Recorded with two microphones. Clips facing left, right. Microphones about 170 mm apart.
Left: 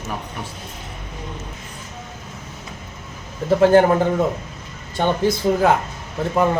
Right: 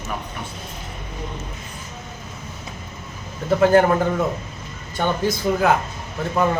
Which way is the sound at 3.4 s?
30° left (ahead or behind).